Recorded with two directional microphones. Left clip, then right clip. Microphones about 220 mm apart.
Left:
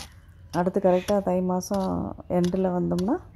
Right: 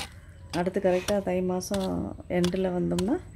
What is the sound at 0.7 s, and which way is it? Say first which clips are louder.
Speech: left 3 dB; centre (ahead or behind).